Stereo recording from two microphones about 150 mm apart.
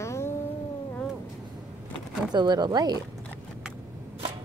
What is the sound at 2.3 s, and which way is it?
Speech, 30° right (ahead or behind).